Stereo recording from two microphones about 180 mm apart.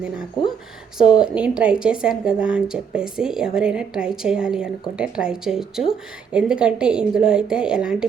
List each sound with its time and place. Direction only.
1.1 s a woman's voice: 5° right (ahead or behind)